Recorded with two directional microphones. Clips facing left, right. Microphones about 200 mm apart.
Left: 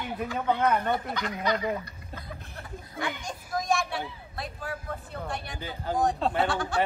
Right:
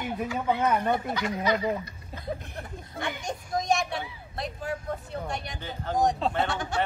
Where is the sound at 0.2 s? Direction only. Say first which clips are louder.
Left 1 dB; 10° right (ahead or behind).